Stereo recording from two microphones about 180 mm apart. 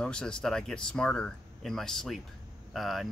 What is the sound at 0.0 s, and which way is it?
Speech, 5° left (ahead or behind).